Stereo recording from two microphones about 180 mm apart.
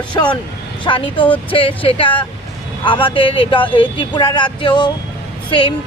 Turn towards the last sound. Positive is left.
turn(degrees=30)  # may be behind; listen again after turning